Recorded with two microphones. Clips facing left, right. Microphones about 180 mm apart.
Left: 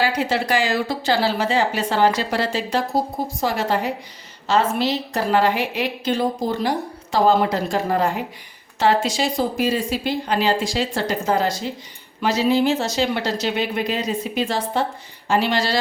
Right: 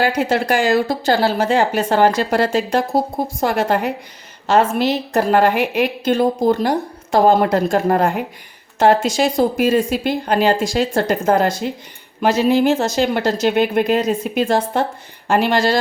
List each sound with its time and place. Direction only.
0.0 s a woman's voice: 50° right (ahead or behind)